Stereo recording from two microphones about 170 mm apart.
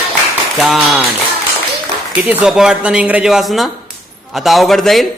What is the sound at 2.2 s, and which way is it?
Speech, 5° right (ahead or behind).